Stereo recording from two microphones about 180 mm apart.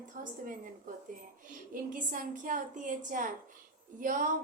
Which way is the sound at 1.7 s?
50° right (ahead or behind).